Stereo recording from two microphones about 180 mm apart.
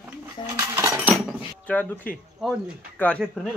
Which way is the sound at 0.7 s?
10° right (ahead or behind).